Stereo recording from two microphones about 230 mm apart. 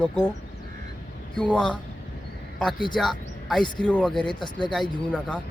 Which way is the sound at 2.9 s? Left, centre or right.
Centre.